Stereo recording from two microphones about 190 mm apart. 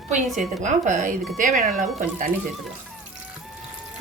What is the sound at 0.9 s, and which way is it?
Speech, 40° right (ahead or behind).